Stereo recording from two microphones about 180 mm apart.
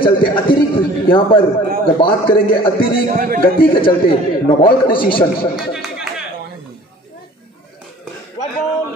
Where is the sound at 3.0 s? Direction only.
50° right (ahead or behind).